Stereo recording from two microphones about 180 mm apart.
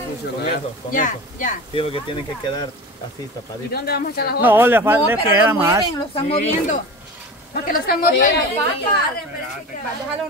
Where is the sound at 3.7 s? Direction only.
60° left (ahead or behind).